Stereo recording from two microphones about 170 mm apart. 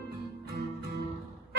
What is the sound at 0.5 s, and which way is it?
Music, 75° right (ahead or behind).